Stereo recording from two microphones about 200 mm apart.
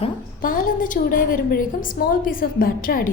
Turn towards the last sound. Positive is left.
turn(degrees=45)  # may be behind; listen again after turning